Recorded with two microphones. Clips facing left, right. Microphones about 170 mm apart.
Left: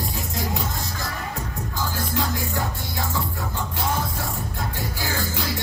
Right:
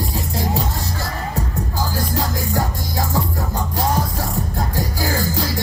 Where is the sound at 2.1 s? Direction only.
40° right (ahead or behind).